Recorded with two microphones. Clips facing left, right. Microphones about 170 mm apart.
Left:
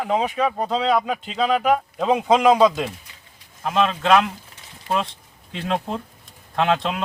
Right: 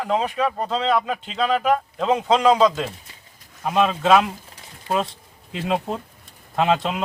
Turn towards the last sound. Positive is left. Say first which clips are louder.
# right 1 dB
turn(degrees=-5)  # may be behind; listen again after turning